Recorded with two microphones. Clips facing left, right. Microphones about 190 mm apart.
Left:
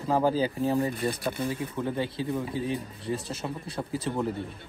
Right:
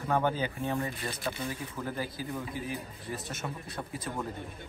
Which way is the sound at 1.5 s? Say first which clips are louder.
Left 6 dB; 25° left (ahead or behind).